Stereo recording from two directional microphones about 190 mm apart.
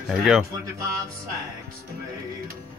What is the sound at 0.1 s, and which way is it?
Speech, 5° right (ahead or behind).